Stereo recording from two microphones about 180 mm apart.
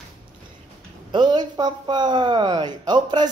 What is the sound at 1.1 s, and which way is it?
Speech, 25° right (ahead or behind).